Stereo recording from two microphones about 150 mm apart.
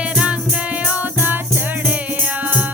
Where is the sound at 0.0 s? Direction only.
5° right (ahead or behind).